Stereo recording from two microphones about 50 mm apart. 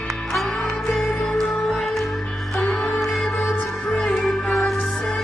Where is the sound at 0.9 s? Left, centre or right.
Centre.